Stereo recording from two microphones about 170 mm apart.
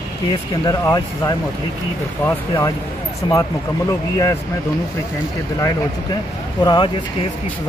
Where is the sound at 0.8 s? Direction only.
20° left (ahead or behind).